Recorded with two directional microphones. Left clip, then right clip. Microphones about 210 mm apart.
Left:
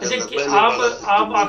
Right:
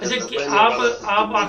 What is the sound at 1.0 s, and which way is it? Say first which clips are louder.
Speech: left 5 dB; 5° left (ahead or behind).